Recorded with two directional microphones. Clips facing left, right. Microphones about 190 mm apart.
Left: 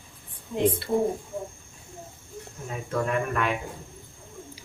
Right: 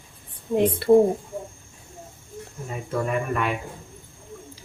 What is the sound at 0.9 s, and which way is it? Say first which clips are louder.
Speech: right 14 dB; 55° right (ahead or behind).